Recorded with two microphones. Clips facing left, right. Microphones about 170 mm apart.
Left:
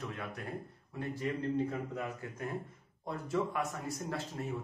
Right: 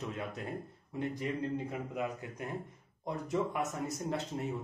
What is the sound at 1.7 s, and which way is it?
Speech, 15° right (ahead or behind).